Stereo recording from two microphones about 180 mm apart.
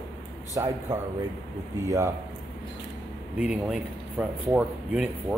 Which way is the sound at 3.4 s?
5° right (ahead or behind).